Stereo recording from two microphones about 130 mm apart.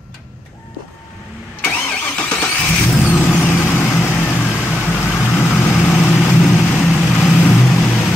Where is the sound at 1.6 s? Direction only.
10° left (ahead or behind).